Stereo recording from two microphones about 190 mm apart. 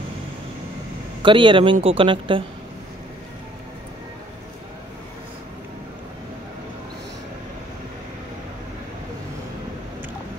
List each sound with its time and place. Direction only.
1.2 s speech: 25° right (ahead or behind)